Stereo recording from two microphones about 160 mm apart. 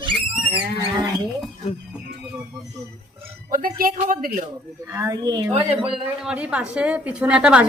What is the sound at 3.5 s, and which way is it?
Speech, 60° right (ahead or behind).